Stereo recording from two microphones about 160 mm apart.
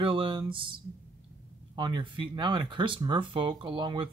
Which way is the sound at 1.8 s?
30° right (ahead or behind).